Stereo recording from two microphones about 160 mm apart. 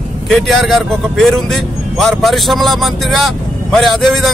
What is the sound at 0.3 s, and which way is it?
A man's voice, centre (ahead or behind).